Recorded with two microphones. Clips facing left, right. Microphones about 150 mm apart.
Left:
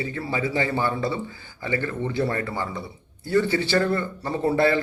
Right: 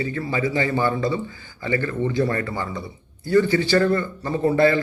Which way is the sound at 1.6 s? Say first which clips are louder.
Right 3 dB; 10° left (ahead or behind).